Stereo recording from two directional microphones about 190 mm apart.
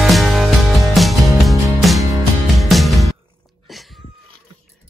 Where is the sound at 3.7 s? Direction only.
Centre (ahead or behind).